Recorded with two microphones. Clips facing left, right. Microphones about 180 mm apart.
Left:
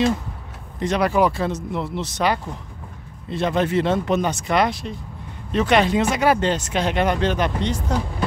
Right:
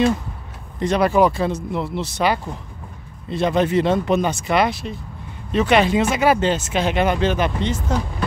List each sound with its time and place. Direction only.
0.7 s speech: 35° right (ahead or behind); by 8.0 s 5° right (ahead or behind)